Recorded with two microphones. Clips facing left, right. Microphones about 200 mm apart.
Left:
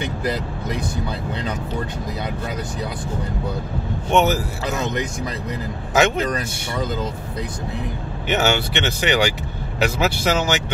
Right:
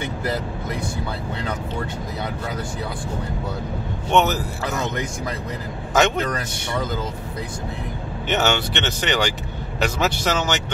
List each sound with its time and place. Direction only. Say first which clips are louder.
0.2 s speech: left 1 dB; 20° left (ahead or behind)
4.1 s speech: left 1 dB; 10° left (ahead or behind)
5.9 s speech: left 1 dB; 10° left (ahead or behind)
8.3 s speech: left 1 dB; 10° left (ahead or behind)